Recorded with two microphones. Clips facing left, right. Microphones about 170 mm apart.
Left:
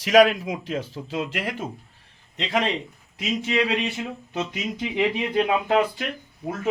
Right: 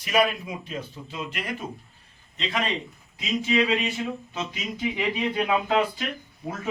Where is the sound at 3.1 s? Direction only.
70° left (ahead or behind).